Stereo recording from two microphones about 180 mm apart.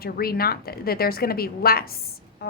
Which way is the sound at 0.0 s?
55° left (ahead or behind).